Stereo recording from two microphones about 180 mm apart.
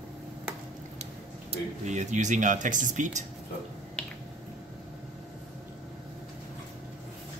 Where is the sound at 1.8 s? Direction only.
40° right (ahead or behind).